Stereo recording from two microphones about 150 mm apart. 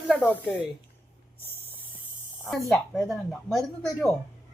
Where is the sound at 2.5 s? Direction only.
Centre (ahead or behind).